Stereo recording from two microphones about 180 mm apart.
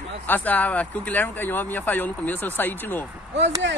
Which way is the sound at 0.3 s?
10° left (ahead or behind).